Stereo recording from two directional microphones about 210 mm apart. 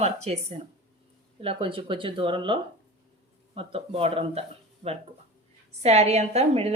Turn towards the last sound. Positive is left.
turn(degrees=-30)  # may be behind; listen again after turning